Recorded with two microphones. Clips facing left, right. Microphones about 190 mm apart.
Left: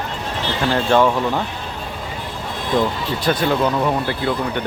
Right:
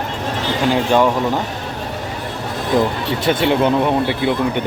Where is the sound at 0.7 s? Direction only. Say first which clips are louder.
Right 1 dB; 15° right (ahead or behind).